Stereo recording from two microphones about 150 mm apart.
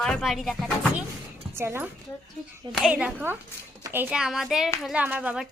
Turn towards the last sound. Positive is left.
turn(degrees=-10)  # may be behind; listen again after turning